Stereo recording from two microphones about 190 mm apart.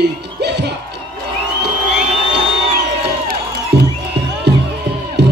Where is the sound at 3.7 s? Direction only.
65° right (ahead or behind).